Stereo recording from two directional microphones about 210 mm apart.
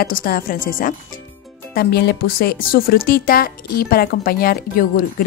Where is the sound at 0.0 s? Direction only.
45° left (ahead or behind).